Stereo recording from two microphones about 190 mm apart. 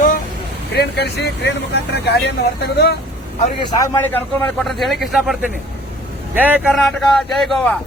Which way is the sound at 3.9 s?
10° left (ahead or behind).